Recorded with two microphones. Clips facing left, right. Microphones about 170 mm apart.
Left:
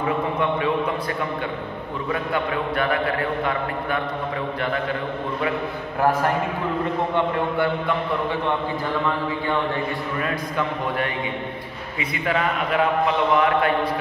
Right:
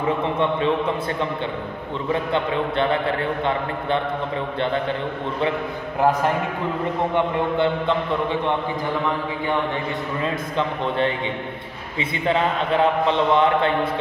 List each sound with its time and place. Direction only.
2.3 s a man's voice: 25° right (ahead or behind)
5.9 s a man's voice: 20° right (ahead or behind)
12.0 s a man's voice: 25° right (ahead or behind)